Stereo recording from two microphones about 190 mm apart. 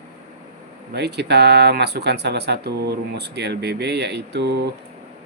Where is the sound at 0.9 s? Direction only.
60° right (ahead or behind).